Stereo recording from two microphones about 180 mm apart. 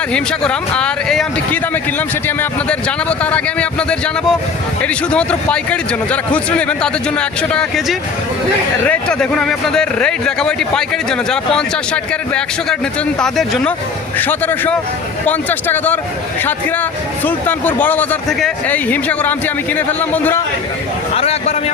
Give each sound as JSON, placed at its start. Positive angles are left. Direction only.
{"t": 0.1, "sound": "a man's voice", "side_deg": 5}
{"t": 13.1, "sound": "a man's voice", "side_deg": 0}
{"t": 17.2, "sound": "a man's voice", "side_deg": 10}
{"t": 21.1, "sound": "a sound", "side_deg": 35}